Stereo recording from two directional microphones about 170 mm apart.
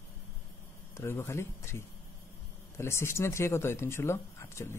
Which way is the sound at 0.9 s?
15° left (ahead or behind).